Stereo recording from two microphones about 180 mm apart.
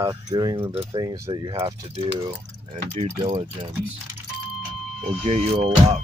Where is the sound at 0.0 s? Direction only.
20° right (ahead or behind).